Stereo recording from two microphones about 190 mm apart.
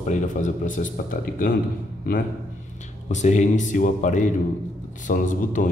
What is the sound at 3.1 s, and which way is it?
A man's voice, 40° left (ahead or behind).